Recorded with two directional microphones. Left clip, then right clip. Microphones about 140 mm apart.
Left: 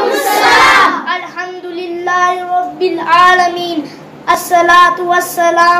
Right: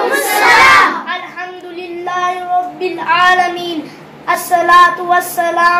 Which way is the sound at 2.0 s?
5° right (ahead or behind).